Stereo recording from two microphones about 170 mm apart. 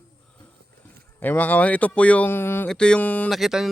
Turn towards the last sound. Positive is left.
turn(degrees=0)  # may be behind; listen again after turning